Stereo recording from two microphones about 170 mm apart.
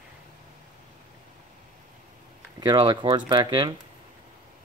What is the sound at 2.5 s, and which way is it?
Speech, 25° right (ahead or behind).